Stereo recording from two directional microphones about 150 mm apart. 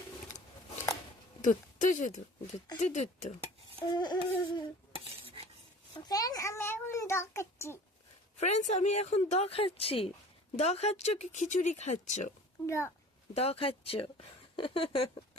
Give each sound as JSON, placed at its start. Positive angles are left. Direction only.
{"t": 1.4, "sound": "a woman's voice", "side_deg": 60}
{"t": 3.8, "sound": "humming", "side_deg": 30}
{"t": 4.9, "sound": "cutlery", "side_deg": -40}
{"t": 5.9, "sound": "a sound", "side_deg": 25}
{"t": 8.4, "sound": "a woman's voice", "side_deg": 50}
{"t": 12.6, "sound": "humming", "side_deg": 20}
{"t": 13.3, "sound": "speech", "side_deg": 40}